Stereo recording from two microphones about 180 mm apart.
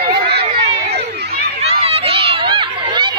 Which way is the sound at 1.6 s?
35° right (ahead or behind).